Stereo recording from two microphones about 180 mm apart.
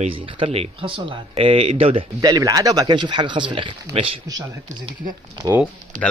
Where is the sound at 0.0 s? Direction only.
30° right (ahead or behind).